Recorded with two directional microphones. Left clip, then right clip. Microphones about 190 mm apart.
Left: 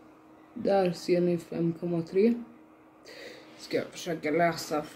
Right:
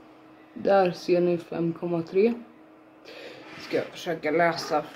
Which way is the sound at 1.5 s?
10° left (ahead or behind).